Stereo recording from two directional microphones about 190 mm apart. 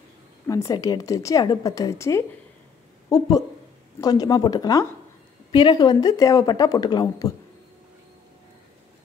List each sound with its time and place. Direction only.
0.5 s a woman's voice: 15° left (ahead or behind)